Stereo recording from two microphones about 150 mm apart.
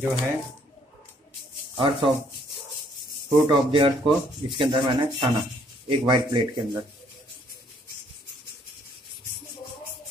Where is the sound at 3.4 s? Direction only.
35° right (ahead or behind).